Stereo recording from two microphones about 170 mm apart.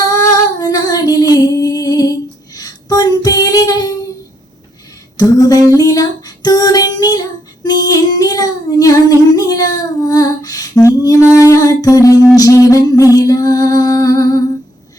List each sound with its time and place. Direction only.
0.0 s female singing: 20° left (ahead or behind)
5.1 s music: 20° left (ahead or behind)